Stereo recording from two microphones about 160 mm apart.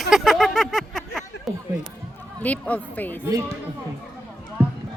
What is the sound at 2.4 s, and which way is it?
Speech, 10° left (ahead or behind).